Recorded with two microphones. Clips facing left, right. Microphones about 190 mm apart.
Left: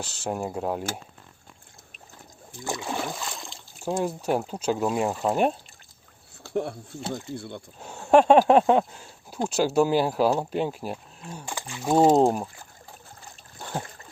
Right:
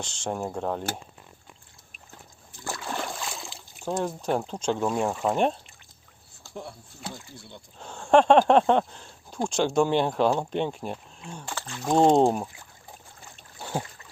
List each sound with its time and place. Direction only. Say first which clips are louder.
0.0 s speech: left 1 dB; 5° left (ahead or behind)
2.6 s boat: left 3 dB; 15° left (ahead or behind); by 3.6 s centre (ahead or behind)
3.8 s speech: left 2 dB; 10° left (ahead or behind)
6.4 s a sound: left 11 dB; 65° left (ahead or behind)
7.3 s speech: left 10 dB; 55° left (ahead or behind)
7.8 s speech: left 1 dB; 10° left (ahead or behind)